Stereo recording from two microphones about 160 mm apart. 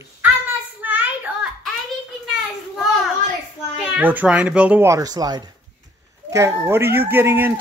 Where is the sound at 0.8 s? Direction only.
10° right (ahead or behind).